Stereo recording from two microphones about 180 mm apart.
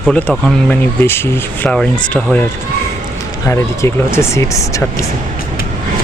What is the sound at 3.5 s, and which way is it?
Speech, 15° left (ahead or behind).